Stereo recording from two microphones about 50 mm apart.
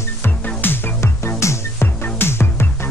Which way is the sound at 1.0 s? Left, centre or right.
Left.